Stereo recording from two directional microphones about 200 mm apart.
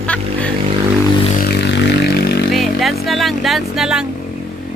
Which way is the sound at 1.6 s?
60° left (ahead or behind).